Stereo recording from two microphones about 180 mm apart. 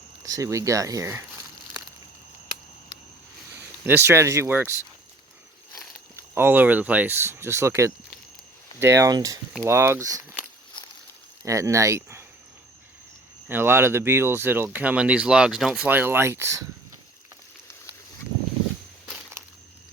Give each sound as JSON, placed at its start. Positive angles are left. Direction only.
{"t": 0.2, "sound": "speech", "side_deg": -20}
{"t": 3.8, "sound": "speech", "side_deg": -15}
{"t": 6.1, "sound": "speech", "side_deg": -10}
{"t": 11.4, "sound": "speech", "side_deg": -15}
{"t": 13.5, "sound": "speech", "side_deg": -10}